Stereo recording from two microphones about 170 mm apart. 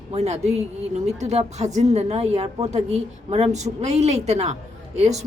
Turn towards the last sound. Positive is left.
turn(degrees=-40)  # may be behind; listen again after turning